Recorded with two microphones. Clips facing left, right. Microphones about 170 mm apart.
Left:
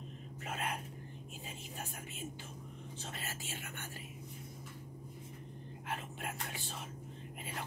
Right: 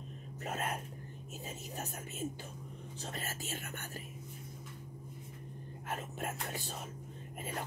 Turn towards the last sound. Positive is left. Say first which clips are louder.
# right 3 dB
turn(degrees=-45)  # may be behind; listen again after turning